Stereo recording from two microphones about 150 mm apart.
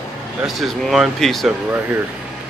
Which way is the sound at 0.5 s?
Centre (ahead or behind).